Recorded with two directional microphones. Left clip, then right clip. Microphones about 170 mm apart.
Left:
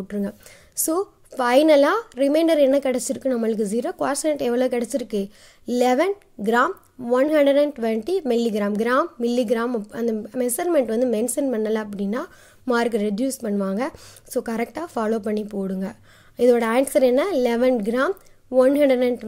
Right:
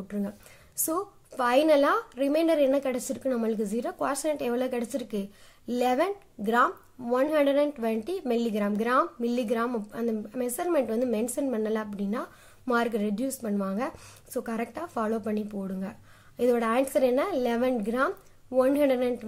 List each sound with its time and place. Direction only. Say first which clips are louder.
0.8 s a woman's voice: left 7 dB; 35° left (ahead or behind)